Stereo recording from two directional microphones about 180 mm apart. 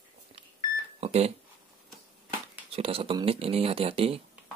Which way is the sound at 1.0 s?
35° right (ahead or behind).